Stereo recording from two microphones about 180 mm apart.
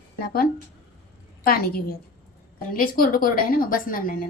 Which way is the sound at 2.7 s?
50° left (ahead or behind).